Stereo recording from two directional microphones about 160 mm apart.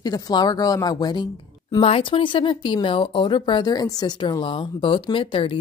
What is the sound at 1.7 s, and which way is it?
Speech, 35° left (ahead or behind).